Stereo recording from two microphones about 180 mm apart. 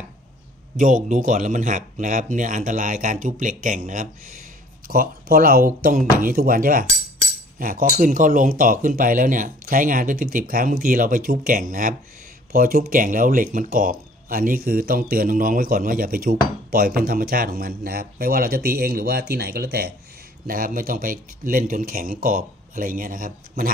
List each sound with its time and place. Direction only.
0.7 s speech: 45° right (ahead or behind)